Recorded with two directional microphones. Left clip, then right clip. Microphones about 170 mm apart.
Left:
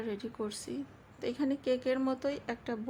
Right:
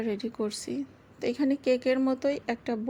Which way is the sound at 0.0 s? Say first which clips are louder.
Right 6 dB; 25° right (ahead or behind).